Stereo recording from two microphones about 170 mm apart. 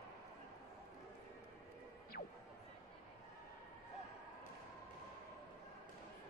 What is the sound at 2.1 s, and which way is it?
Music, 65° left (ahead or behind).